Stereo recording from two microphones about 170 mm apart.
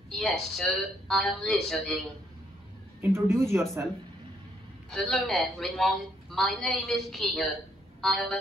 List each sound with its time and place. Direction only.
0.1 s a man's voice: centre (ahead or behind)
3.0 s a man's voice: 15° right (ahead or behind)
4.9 s a man's voice: centre (ahead or behind)